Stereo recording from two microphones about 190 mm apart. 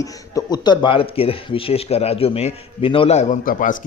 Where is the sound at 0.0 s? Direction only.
20° left (ahead or behind).